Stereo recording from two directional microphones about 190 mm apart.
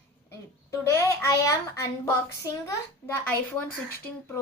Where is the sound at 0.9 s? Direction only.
15° left (ahead or behind).